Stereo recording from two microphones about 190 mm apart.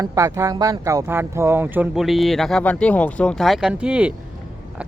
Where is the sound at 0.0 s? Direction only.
15° right (ahead or behind).